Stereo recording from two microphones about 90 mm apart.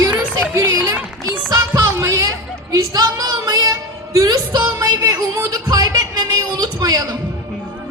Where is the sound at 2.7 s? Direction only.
45° right (ahead or behind).